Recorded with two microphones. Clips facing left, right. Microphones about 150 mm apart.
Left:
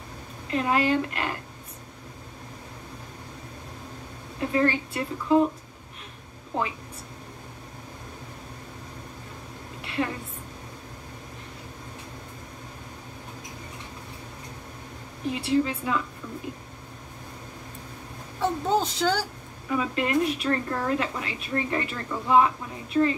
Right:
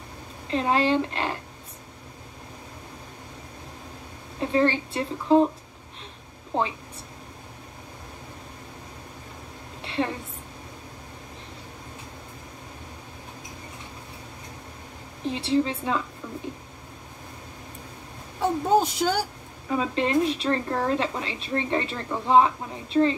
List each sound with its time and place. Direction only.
0.5 s a woman's voice: 30° right (ahead or behind)
4.4 s speech: 30° right (ahead or behind)
6.5 s a woman's voice: 30° right (ahead or behind)
9.8 s a sound: 30° right (ahead or behind)
15.2 s speech: 30° right (ahead or behind)
18.4 s a woman's voice: 10° right (ahead or behind)
19.7 s speech: 30° right (ahead or behind)